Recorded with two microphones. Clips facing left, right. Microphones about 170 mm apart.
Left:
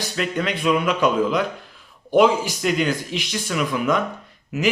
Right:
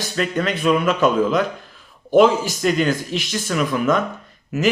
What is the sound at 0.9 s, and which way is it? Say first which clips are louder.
Speech: right 2 dB; 45° right (ahead or behind).